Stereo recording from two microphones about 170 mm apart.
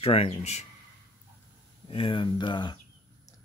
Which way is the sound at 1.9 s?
30° left (ahead or behind).